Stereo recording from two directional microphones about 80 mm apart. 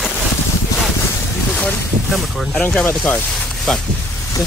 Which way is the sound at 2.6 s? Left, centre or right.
Centre.